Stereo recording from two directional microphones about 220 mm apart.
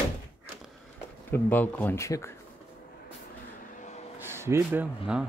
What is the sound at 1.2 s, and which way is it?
Speech, 10° left (ahead or behind).